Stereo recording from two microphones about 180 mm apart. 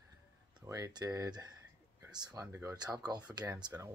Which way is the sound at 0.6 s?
20° right (ahead or behind).